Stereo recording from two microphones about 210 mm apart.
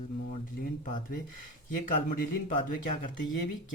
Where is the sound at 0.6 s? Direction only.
40° left (ahead or behind).